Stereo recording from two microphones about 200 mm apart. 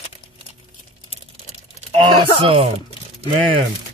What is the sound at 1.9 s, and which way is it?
Speech, 25° right (ahead or behind).